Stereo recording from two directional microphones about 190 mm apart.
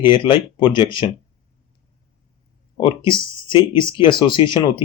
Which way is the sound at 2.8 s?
25° left (ahead or behind).